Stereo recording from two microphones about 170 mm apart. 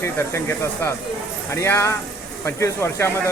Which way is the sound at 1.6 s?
15° left (ahead or behind).